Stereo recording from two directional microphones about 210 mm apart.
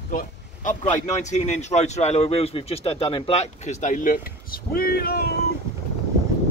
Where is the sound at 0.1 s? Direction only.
40° left (ahead or behind).